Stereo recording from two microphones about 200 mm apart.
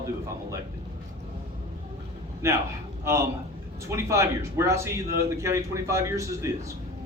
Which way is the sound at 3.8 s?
15° right (ahead or behind).